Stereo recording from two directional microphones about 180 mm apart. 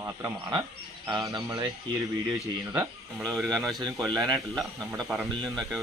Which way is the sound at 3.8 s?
20° right (ahead or behind).